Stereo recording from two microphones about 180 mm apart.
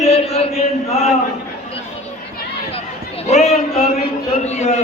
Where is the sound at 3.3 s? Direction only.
35° left (ahead or behind).